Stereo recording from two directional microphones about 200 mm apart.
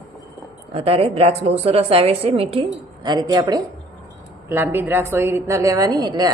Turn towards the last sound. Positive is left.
turn(degrees=-20)  # may be behind; listen again after turning